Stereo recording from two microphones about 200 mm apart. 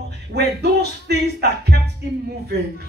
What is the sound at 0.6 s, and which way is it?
Music, 55° right (ahead or behind).